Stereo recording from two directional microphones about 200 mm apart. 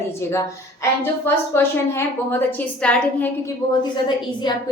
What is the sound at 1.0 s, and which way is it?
A woman's voice, 10° left (ahead or behind).